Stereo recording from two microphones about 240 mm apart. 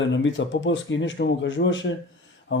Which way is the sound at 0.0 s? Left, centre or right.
Left.